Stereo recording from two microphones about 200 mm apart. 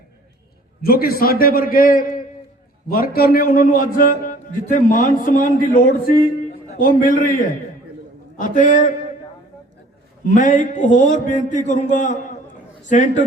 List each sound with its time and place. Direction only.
0.8 s a man's voice: 50° left (ahead or behind)
10.2 s a man's voice: 40° left (ahead or behind)